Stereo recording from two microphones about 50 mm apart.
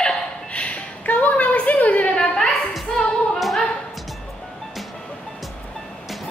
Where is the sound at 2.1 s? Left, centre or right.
Centre.